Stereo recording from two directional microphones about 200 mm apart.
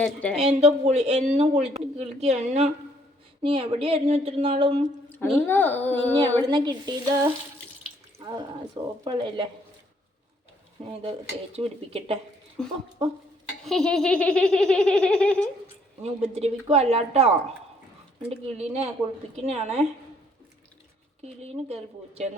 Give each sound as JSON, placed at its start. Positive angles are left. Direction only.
{"t": 0.0, "sound": "speech", "side_deg": 5}
{"t": 0.3, "sound": "a woman's voice", "side_deg": -30}
{"t": 5.1, "sound": "a woman's voice", "side_deg": 10}
{"t": 6.4, "sound": "speech", "side_deg": -20}
{"t": 11.5, "sound": "speech", "side_deg": -30}
{"t": 12.6, "sound": "speech", "side_deg": 5}
{"t": 16.0, "sound": "a woman's voice", "side_deg": -35}
{"t": 21.2, "sound": "a woman's voice", "side_deg": -30}